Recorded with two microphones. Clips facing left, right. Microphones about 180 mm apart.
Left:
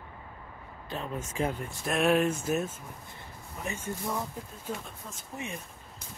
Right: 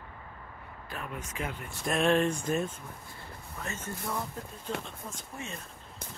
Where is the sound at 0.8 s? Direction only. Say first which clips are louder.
Left 4 dB; 25° left (ahead or behind).